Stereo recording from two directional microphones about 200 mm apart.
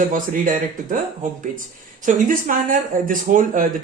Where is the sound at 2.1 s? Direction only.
40° right (ahead or behind).